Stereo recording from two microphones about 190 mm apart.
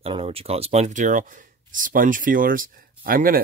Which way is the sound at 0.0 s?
30° right (ahead or behind).